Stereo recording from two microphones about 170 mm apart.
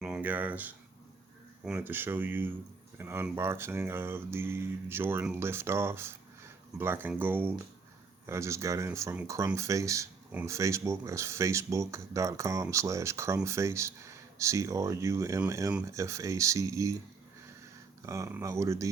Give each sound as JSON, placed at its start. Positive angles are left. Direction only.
{"t": 0.0, "sound": "speech", "side_deg": -10}
{"t": 18.0, "sound": "speech", "side_deg": -15}